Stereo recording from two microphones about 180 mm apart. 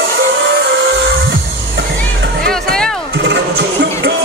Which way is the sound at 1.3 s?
65° right (ahead or behind).